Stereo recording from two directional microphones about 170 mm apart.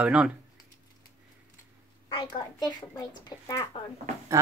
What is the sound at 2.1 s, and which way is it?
A child's voice, 25° left (ahead or behind).